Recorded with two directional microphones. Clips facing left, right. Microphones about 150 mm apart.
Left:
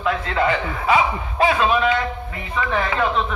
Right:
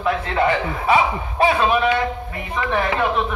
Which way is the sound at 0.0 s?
25° right (ahead or behind).